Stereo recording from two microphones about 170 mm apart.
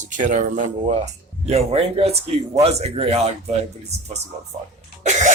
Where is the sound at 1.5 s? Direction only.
35° right (ahead or behind).